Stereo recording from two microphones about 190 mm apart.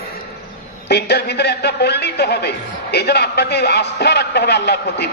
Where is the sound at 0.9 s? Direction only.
60° left (ahead or behind).